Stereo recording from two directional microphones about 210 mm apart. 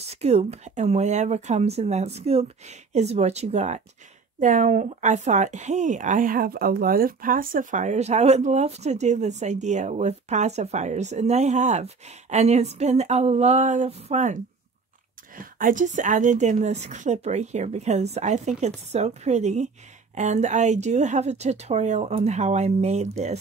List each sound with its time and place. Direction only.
0.0 s speech: 30° right (ahead or behind)